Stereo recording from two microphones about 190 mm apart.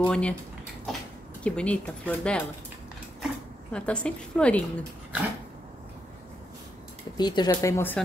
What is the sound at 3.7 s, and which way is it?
Speech, 5° left (ahead or behind).